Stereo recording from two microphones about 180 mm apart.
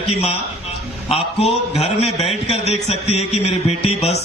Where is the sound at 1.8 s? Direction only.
35° left (ahead or behind).